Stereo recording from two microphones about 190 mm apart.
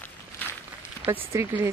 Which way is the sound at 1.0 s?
15° right (ahead or behind).